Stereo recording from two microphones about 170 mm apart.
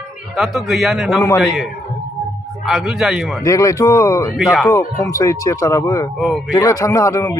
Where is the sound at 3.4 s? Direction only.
20° left (ahead or behind).